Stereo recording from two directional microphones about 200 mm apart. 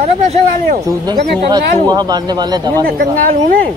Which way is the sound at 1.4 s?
20° right (ahead or behind).